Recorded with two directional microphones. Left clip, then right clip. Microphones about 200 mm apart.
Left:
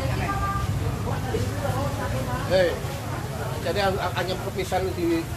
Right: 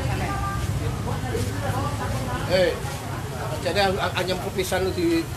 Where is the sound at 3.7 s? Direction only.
60° right (ahead or behind).